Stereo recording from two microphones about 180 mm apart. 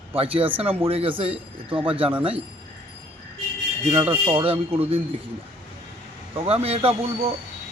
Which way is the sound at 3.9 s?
25° right (ahead or behind).